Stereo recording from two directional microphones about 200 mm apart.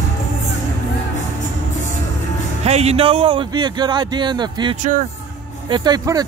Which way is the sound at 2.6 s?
30° right (ahead or behind).